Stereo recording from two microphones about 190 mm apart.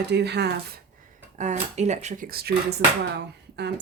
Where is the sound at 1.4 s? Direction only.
35° right (ahead or behind).